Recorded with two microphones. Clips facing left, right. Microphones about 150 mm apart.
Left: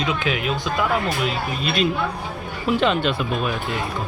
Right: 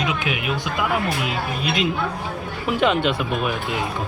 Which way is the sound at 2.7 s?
15° right (ahead or behind).